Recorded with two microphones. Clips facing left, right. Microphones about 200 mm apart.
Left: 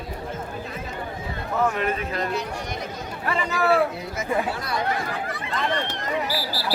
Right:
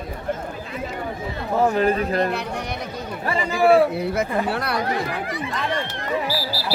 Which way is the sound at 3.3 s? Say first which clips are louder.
Right 5 dB; 35° right (ahead or behind).